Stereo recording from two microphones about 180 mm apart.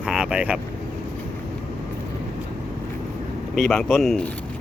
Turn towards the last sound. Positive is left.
turn(degrees=5)  # may be behind; listen again after turning